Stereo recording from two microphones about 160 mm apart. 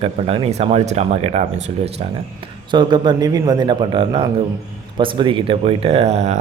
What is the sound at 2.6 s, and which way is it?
A man's voice, 30° right (ahead or behind).